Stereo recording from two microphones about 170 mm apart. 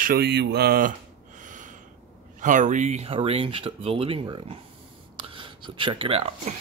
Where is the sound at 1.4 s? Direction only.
50° right (ahead or behind).